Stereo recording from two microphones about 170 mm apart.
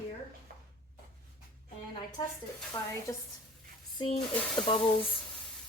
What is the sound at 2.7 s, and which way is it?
Stir, 15° left (ahead or behind).